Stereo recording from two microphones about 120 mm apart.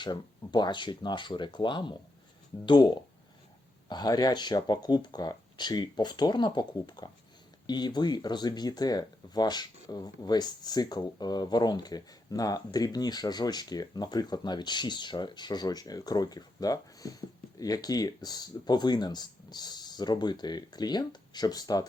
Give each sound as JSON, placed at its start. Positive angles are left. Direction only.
{"t": 0.0, "sound": "speech", "side_deg": 40}